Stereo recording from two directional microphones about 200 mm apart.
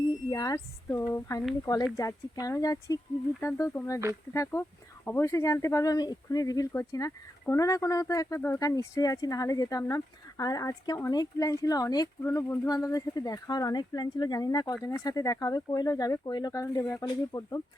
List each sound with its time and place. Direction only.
0.1 s speech: 15° left (ahead or behind)